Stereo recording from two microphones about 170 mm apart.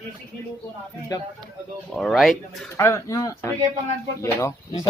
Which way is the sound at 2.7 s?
20° left (ahead or behind).